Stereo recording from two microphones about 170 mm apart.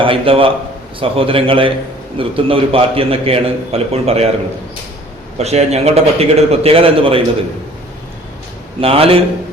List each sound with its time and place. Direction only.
0.0 s a man's voice: 30° right (ahead or behind)
5.4 s a man's voice: 40° right (ahead or behind)
8.8 s a man's voice: 35° right (ahead or behind)